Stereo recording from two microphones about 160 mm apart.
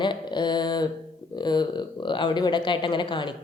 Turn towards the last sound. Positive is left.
turn(degrees=30)  # may be behind; listen again after turning